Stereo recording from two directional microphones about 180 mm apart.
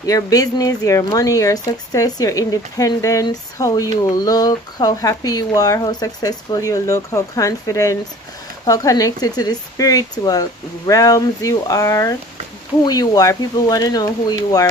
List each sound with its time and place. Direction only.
0.0 s speech: 20° left (ahead or behind)